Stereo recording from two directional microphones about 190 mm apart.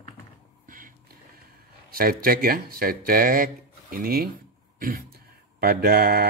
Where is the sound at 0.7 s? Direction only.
45° right (ahead or behind).